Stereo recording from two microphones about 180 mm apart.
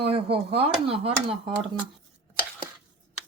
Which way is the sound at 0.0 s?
30° right (ahead or behind).